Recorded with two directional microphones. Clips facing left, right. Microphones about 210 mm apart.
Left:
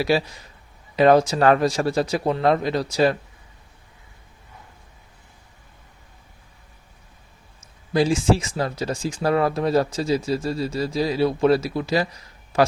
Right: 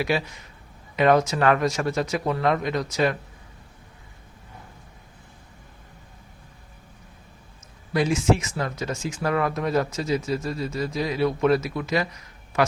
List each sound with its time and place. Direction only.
0.0 s speech: 35° left (ahead or behind)
7.9 s speech: 30° left (ahead or behind)